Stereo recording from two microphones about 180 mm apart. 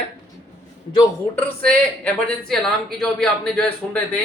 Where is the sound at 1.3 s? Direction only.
10° left (ahead or behind).